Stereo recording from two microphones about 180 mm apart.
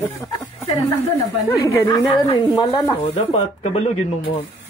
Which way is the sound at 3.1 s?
35° left (ahead or behind).